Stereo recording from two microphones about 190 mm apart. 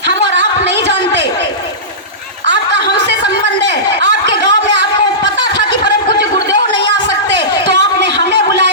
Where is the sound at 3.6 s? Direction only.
70° right (ahead or behind).